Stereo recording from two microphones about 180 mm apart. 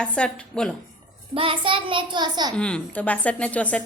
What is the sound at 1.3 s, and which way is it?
A child's voice, 30° right (ahead or behind).